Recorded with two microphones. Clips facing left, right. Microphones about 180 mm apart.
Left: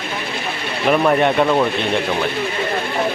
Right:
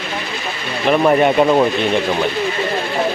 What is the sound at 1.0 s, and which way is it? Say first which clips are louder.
Speech: right 4 dB; 5° right (ahead or behind).